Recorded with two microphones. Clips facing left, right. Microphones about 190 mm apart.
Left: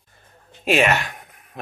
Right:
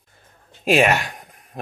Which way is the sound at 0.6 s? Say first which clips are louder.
Right 2 dB; 40° right (ahead or behind).